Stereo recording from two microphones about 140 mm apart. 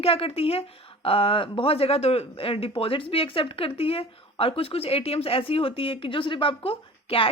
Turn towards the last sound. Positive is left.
turn(degrees=40)  # may be behind; listen again after turning